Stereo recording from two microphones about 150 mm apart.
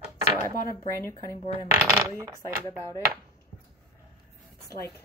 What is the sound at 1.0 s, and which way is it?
Speech, 20° left (ahead or behind).